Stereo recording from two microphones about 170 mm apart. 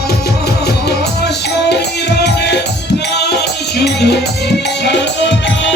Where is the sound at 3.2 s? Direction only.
75° left (ahead or behind).